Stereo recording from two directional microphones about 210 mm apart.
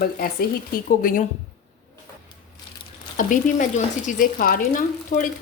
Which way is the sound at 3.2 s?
40° left (ahead or behind).